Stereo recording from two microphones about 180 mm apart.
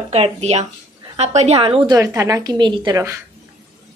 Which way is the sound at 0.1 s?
35° right (ahead or behind).